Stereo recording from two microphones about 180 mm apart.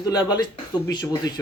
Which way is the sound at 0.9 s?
25° left (ahead or behind).